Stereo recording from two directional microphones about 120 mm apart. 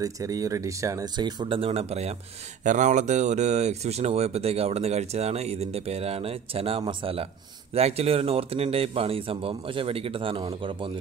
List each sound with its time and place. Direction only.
0.0 s speech: 30° right (ahead or behind); by 2.1 s 60° right (ahead or behind)
2.6 s speech: 90° right; by 7.2 s 50° right (ahead or behind)
7.7 s speech: 60° right (ahead or behind)